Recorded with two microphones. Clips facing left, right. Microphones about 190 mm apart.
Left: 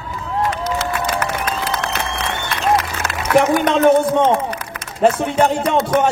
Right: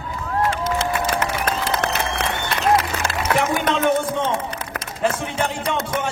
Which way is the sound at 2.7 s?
30° right (ahead or behind).